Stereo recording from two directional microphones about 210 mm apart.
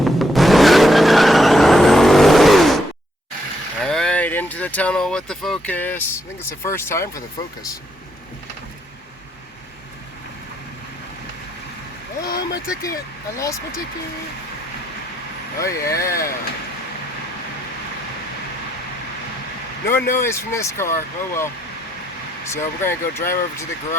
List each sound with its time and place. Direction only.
0.0 s vehicle: centre (ahead or behind)
3.8 s speech: 5° left (ahead or behind)
12.3 s speech: 45° left (ahead or behind)
13.3 s speech: 15° left (ahead or behind)
15.5 s speech: 15° left (ahead or behind)
16.0 s speech: 45° left (ahead or behind)
20.1 s speech: 10° left (ahead or behind)
22.5 s speech: 10° left (ahead or behind)